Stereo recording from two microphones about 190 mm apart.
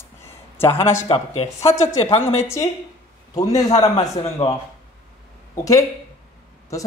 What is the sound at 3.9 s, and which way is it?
Speech, 30° left (ahead or behind).